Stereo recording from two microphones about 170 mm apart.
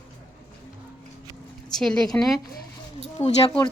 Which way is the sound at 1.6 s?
5° left (ahead or behind).